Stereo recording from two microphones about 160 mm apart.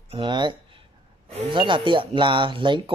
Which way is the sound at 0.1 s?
30° right (ahead or behind).